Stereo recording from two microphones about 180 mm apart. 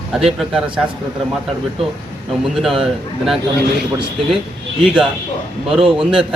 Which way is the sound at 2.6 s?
Centre (ahead or behind).